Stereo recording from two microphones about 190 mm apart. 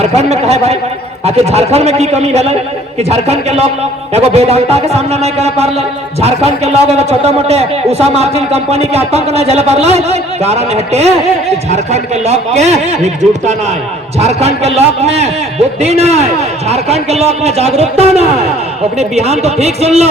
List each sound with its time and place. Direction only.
0.0 s a man's voice: 35° right (ahead or behind)